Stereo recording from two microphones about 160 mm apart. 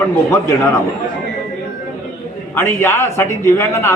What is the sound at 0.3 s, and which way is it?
Speech, 20° left (ahead or behind).